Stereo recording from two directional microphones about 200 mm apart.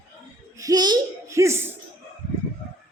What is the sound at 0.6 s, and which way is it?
A child's voice, 20° right (ahead or behind).